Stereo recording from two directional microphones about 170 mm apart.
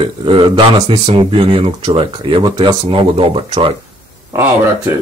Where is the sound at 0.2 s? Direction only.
30° right (ahead or behind).